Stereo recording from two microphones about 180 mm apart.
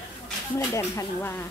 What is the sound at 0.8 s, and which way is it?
Speech, 15° left (ahead or behind).